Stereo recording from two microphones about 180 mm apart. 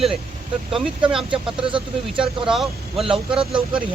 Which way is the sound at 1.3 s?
30° right (ahead or behind).